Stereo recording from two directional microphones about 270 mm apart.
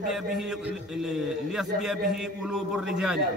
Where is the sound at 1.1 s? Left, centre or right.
Centre.